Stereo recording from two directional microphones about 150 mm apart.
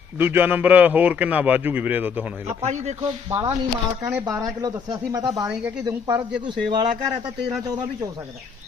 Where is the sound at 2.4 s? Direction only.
45° right (ahead or behind).